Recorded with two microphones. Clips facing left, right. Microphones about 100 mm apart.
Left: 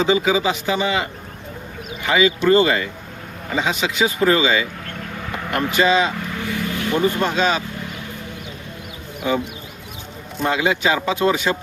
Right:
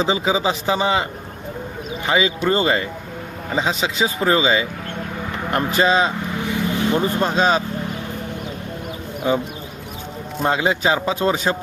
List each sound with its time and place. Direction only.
0.0 s a man's voice: 30° right (ahead or behind)
2.0 s a man's voice: 30° right (ahead or behind)
6.4 s speech: 20° right (ahead or behind)
10.4 s a man's voice: 35° right (ahead or behind)